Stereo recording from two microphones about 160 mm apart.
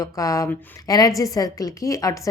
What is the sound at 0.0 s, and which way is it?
A woman's voice, 20° left (ahead or behind).